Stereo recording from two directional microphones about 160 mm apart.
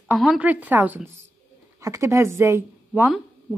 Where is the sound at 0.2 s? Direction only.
5° right (ahead or behind).